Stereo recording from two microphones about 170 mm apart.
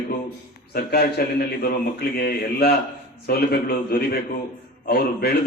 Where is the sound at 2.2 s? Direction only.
65° left (ahead or behind).